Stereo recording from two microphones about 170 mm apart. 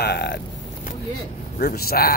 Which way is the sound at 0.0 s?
80° left.